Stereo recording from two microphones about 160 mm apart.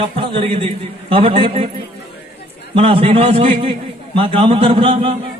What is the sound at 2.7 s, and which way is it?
A man's voice, 35° right (ahead or behind).